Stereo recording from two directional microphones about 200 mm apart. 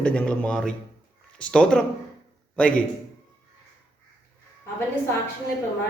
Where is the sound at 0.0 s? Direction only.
5° left (ahead or behind).